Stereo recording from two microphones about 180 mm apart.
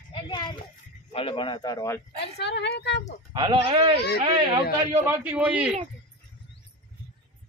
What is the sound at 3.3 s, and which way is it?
Speech, 25° right (ahead or behind).